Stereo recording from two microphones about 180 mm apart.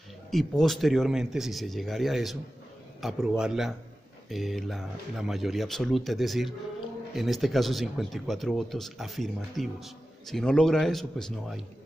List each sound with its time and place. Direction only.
0.3 s speech: centre (ahead or behind)